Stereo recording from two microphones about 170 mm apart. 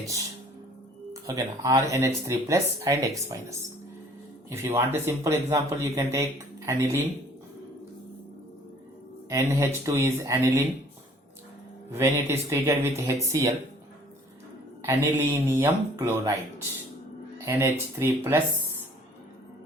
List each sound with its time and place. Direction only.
1.1 s speech: 20° right (ahead or behind)
4.4 s speech: 15° right (ahead or behind)
9.3 s speech: 15° right (ahead or behind)
11.9 s speech: 15° right (ahead or behind)
14.8 s speech: 15° right (ahead or behind)
17.4 s speech: 15° right (ahead or behind)